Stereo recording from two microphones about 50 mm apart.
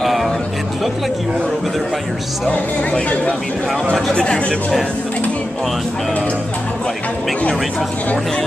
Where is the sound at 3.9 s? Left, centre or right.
Centre.